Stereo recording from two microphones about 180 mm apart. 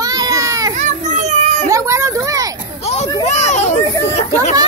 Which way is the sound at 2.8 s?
40° left (ahead or behind).